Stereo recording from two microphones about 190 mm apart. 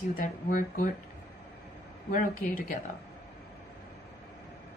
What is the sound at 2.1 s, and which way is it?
Speech, 45° left (ahead or behind).